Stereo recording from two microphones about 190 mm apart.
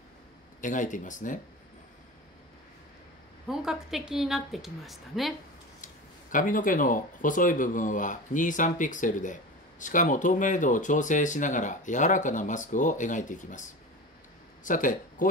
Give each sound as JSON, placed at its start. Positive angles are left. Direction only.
{"t": 0.6, "sound": "speech", "side_deg": 40}
{"t": 3.4, "sound": "a woman's voice", "side_deg": 0}
{"t": 6.3, "sound": "speech", "side_deg": 45}